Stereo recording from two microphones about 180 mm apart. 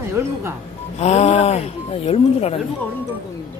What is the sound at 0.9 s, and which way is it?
Speech, 35° left (ahead or behind).